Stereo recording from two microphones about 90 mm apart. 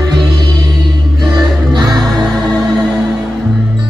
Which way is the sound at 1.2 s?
55° right (ahead or behind).